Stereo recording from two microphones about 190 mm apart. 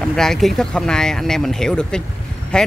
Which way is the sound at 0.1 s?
Centre (ahead or behind).